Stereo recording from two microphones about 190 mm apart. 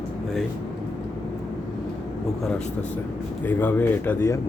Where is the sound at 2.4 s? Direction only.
5° left (ahead or behind).